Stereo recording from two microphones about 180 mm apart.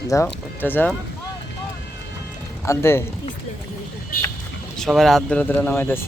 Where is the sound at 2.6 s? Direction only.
15° left (ahead or behind).